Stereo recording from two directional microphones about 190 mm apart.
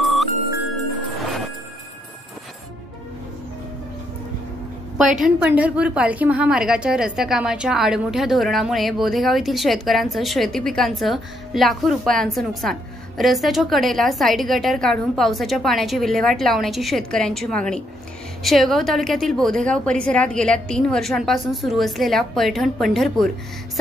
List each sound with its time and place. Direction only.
0.0 s music: centre (ahead or behind)
4.9 s a woman's voice: centre (ahead or behind)